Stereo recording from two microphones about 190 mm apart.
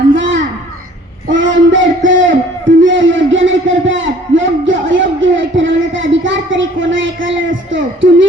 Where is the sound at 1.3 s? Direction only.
80° right.